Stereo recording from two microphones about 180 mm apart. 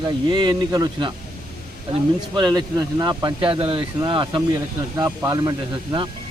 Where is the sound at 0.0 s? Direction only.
25° right (ahead or behind).